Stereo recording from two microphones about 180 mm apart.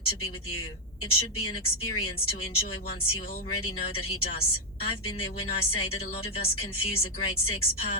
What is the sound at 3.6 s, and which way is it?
A woman's voice, 30° left (ahead or behind).